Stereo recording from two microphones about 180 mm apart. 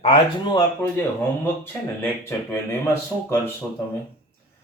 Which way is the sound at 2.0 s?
15° left (ahead or behind).